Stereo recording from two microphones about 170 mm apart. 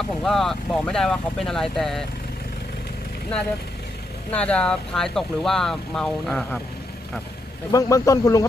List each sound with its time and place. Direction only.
0.0 s speech: centre (ahead or behind)
4.3 s speech: 5° left (ahead or behind)
7.7 s speech: 20° left (ahead or behind)